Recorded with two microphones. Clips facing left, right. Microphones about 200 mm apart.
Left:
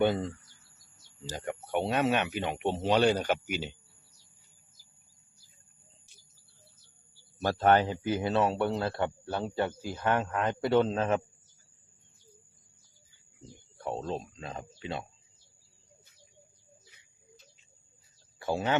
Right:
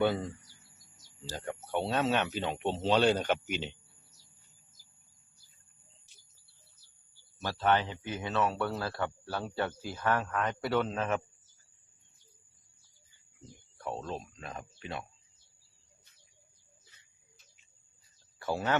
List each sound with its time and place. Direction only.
0.0 s speech: 20° left (ahead or behind)
1.3 s speech: 15° left (ahead or behind)
7.4 s speech: 45° left (ahead or behind); by 9.9 s 15° left (ahead or behind)
10.0 s speech: 25° left (ahead or behind)
13.7 s speech: 25° left (ahead or behind)
18.4 s speech: 20° left (ahead or behind)